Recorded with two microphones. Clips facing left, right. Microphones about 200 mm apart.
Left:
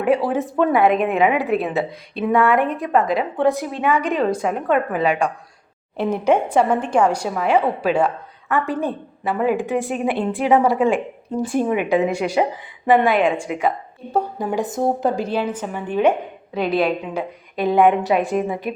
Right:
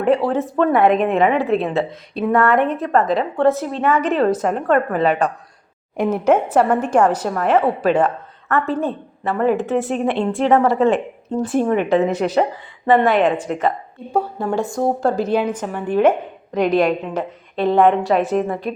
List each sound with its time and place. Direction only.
0.4 s a woman's voice: 10° left (ahead or behind)
6.2 s a woman's voice: 5° right (ahead or behind)
6.9 s a woman's voice: 10° left (ahead or behind)
11.3 s a woman's voice: centre (ahead or behind)
11.7 s a woman's voice: 10° left (ahead or behind)
18.2 s a woman's voice: centre (ahead or behind)
18.4 s a woman's voice: 10° left (ahead or behind)